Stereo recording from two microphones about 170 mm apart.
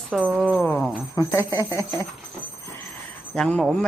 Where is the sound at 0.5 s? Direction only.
10° left (ahead or behind).